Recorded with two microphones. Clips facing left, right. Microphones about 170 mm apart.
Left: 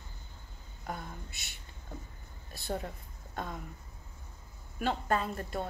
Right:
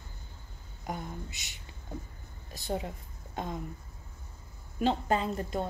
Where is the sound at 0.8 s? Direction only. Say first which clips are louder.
Right 3 dB; 20° right (ahead or behind).